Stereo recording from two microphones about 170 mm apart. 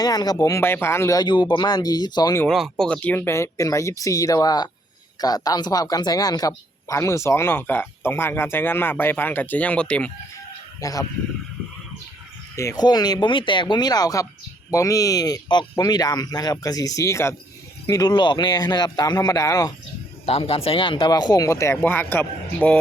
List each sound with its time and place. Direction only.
0.0 s speech: 25° left (ahead or behind)
2.5 s speech: centre (ahead or behind)
10.8 s speech: 20° left (ahead or behind)
12.5 s speech: 20° left (ahead or behind)
20.2 s speech: 35° left (ahead or behind); by 22.8 s 10° left (ahead or behind)